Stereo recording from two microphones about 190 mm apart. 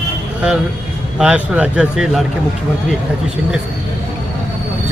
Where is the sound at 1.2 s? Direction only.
5° right (ahead or behind).